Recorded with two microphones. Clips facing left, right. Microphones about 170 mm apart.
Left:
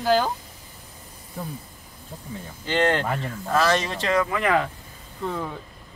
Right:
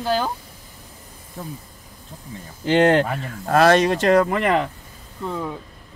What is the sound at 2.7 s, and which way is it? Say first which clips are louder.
Speech: right 6 dB; 45° right (ahead or behind).